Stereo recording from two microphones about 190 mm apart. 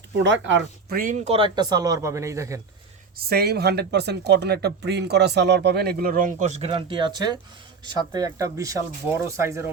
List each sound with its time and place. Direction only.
0.1 s speech: 70° right (ahead or behind)
0.9 s speech: 40° right (ahead or behind); by 2.6 s 15° right (ahead or behind)
3.2 s speech: 55° right (ahead or behind); by 9.6 s 15° right (ahead or behind)